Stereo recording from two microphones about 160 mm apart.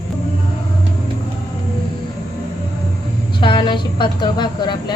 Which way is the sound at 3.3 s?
30° left (ahead or behind).